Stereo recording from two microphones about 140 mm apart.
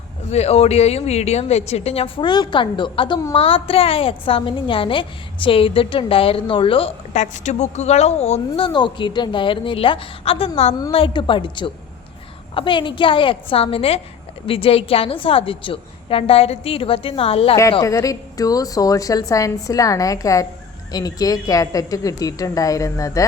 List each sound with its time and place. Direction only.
0.3 s a woman's voice: 50° left (ahead or behind)
10.9 s a woman's voice: 35° left (ahead or behind)
17.8 s a woman's voice: 25° left (ahead or behind)